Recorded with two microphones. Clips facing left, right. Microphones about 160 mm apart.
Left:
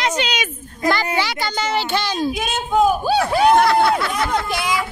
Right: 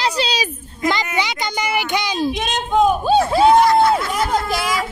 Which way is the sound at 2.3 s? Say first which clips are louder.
Right 1 dB; 5° left (ahead or behind).